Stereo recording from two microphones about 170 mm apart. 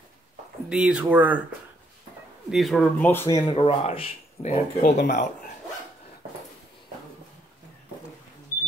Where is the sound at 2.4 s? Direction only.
Centre (ahead or behind).